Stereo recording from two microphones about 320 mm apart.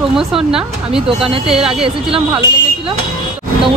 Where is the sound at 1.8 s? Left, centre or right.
Centre.